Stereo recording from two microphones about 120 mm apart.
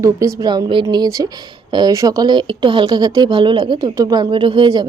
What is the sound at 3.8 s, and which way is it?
A woman's voice, 30° right (ahead or behind).